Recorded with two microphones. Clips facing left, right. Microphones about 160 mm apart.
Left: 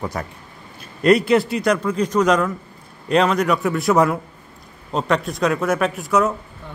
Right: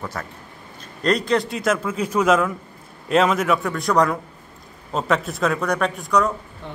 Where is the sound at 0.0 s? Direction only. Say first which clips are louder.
Left 4 dB; 15° left (ahead or behind).